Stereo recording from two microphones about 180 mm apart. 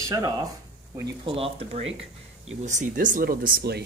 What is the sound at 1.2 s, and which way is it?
Speech, 30° right (ahead or behind).